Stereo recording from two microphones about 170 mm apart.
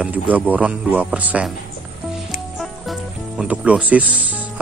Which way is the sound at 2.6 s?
Centre (ahead or behind).